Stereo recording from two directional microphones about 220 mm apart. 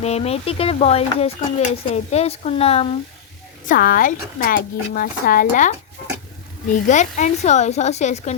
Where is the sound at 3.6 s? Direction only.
40° left (ahead or behind).